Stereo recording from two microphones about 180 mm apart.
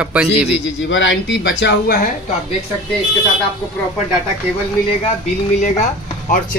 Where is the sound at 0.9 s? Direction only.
90° left.